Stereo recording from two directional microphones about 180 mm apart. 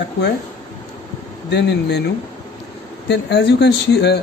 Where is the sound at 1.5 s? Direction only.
70° left (ahead or behind).